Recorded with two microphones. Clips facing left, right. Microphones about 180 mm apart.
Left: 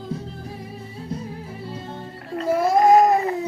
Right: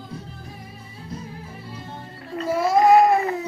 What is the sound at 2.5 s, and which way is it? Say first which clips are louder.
Baby cry: even; 50° left (ahead or behind).